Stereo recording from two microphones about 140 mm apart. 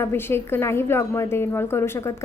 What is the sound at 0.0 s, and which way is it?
A woman's voice, 15° left (ahead or behind).